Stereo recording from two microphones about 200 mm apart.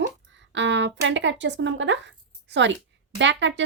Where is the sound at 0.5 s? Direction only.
65° right (ahead or behind).